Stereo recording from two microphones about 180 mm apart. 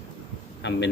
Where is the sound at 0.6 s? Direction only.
75° left (ahead or behind).